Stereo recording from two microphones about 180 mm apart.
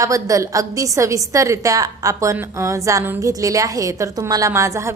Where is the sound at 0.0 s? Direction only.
20° right (ahead or behind).